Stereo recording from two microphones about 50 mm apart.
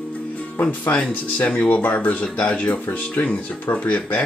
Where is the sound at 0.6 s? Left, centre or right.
Left.